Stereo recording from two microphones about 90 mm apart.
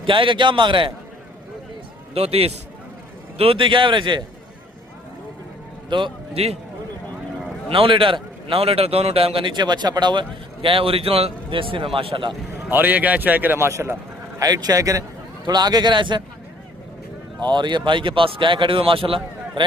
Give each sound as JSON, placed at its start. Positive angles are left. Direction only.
{"t": 0.0, "sound": "speech", "side_deg": -70}
{"t": 2.1, "sound": "a man's voice", "side_deg": -90}
{"t": 5.9, "sound": "a man's voice", "side_deg": -65}
{"t": 7.7, "sound": "a man's voice", "side_deg": -75}
{"t": 12.7, "sound": "a man's voice", "side_deg": -20}
{"t": 13.7, "sound": "a man's voice", "side_deg": -30}
{"t": 14.3, "sound": "a man's voice", "side_deg": -45}
{"t": 17.5, "sound": "speech", "side_deg": -60}